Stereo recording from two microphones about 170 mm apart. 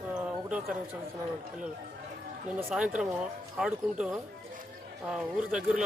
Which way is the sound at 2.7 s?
5° right (ahead or behind).